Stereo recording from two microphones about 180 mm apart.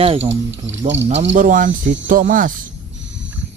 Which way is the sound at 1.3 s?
50° right (ahead or behind).